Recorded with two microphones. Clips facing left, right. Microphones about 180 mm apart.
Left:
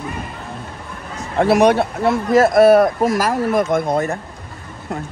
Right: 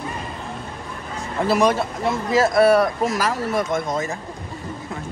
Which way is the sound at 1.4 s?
65° left (ahead or behind).